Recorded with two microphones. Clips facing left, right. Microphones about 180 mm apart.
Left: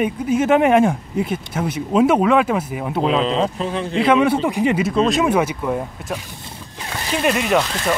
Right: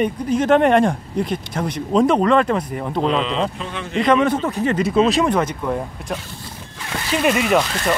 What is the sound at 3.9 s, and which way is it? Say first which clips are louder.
Speech: even; 5° left (ahead or behind).